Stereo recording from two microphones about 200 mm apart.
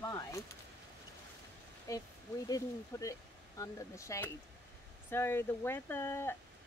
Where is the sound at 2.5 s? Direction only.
15° left (ahead or behind).